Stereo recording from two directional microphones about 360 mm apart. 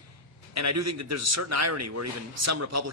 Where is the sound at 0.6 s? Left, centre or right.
Right.